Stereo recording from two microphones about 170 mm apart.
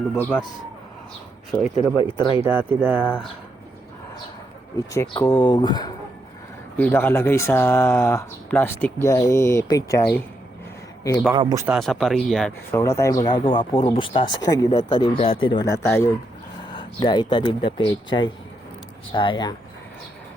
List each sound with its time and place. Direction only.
0.2 s speech: 10° left (ahead or behind)
1.5 s speech: centre (ahead or behind)
1.7 s speech: 30° left (ahead or behind)
2.3 s speech: 10° right (ahead or behind)
4.9 s speech: 15° left (ahead or behind)
6.7 s speech: 10° left (ahead or behind)
11.3 s speech: 25° right (ahead or behind)
11.8 s speech: centre (ahead or behind)
12.7 s speech: 15° left (ahead or behind)
16.7 s speech: 25° left (ahead or behind)